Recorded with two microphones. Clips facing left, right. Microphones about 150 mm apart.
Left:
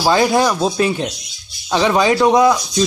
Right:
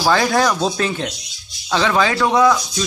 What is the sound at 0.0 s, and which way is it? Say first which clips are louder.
Speech: left 2 dB; 20° left (ahead or behind).